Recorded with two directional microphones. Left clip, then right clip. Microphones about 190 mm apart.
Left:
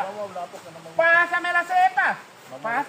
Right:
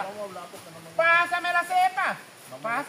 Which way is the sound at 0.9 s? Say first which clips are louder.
Left 3 dB; 45° right (ahead or behind).